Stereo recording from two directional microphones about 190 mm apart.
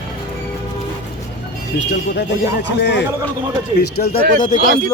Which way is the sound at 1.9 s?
70° left (ahead or behind).